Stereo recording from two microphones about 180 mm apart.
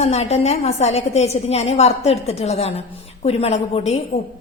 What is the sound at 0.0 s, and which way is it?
A woman's voice, 35° left (ahead or behind).